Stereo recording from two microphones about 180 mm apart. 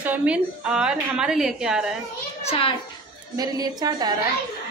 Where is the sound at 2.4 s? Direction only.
30° left (ahead or behind).